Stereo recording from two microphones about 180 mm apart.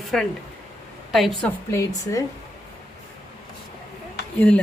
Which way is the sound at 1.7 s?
20° left (ahead or behind).